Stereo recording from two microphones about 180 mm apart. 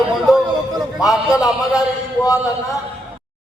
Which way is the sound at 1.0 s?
20° left (ahead or behind).